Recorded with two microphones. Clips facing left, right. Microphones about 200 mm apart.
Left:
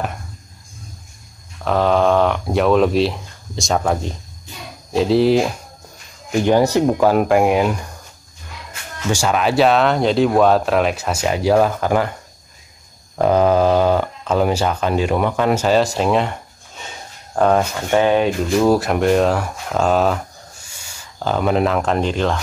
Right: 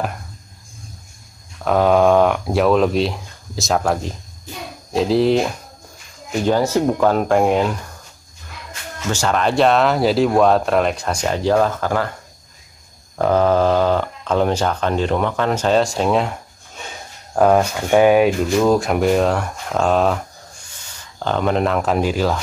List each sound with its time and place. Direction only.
1.6 s speech: 5° right (ahead or behind)
6.4 s speech: 15° left (ahead or behind)
9.1 s speech: 10° left (ahead or behind)
13.2 s speech: 15° left (ahead or behind)
17.9 s speech: 10° right (ahead or behind)
18.6 s speech: 5° left (ahead or behind)